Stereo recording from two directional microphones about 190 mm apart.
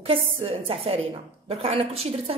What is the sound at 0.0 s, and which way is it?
A woman's voice, 30° right (ahead or behind).